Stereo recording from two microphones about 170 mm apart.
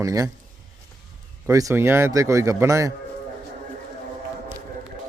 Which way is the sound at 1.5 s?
20° right (ahead or behind).